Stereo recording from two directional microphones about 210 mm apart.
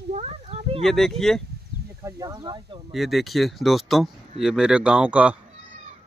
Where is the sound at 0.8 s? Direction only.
Centre (ahead or behind).